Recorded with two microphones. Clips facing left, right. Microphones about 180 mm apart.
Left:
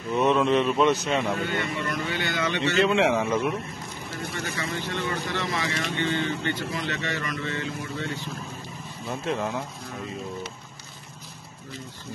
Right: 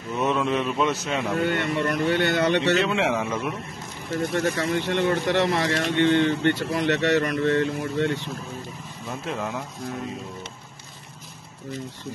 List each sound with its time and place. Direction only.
0.2 s a man's voice: centre (ahead or behind)
1.5 s speech: 60° right (ahead or behind)
2.8 s a man's voice: centre (ahead or behind)
4.2 s speech: 50° right (ahead or behind)
9.3 s a man's voice: centre (ahead or behind)